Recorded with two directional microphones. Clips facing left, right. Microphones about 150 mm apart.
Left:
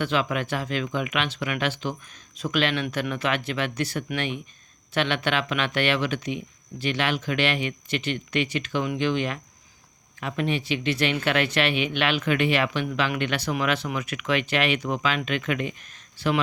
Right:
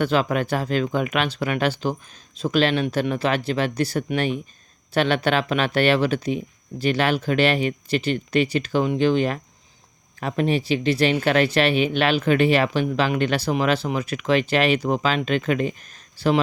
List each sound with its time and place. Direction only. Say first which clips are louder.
0.0 s speech: right 5 dB; 40° right (ahead or behind)